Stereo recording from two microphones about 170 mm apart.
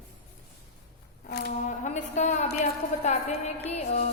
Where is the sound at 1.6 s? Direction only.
45° left (ahead or behind).